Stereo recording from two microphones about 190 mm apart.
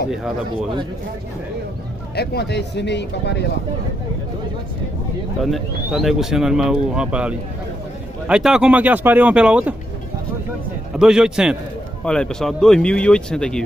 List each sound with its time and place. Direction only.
0.1 s speech: 5° right (ahead or behind)
2.1 s speech: 60° left (ahead or behind)
5.4 s speech: centre (ahead or behind)
11.0 s speech: 5° right (ahead or behind)